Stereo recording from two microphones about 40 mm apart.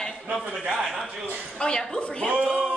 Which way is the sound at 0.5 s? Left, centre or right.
Right.